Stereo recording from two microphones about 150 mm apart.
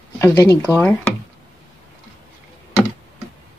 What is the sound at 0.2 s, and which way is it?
Speech, 20° left (ahead or behind).